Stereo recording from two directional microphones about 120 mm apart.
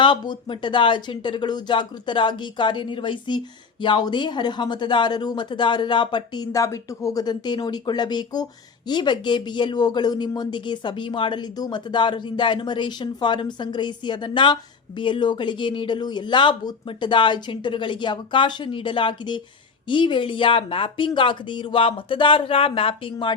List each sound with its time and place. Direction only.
0.0 s speech: 45° left (ahead or behind)